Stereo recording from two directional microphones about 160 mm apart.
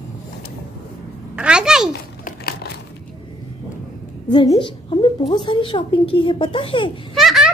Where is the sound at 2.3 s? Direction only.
75° left (ahead or behind).